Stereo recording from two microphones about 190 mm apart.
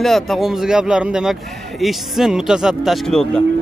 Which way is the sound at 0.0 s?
Centre (ahead or behind).